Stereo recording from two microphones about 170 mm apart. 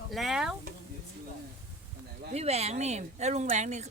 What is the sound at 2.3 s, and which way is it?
Speech, 40° right (ahead or behind).